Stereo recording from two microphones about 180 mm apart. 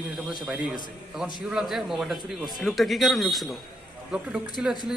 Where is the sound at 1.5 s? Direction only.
Centre (ahead or behind).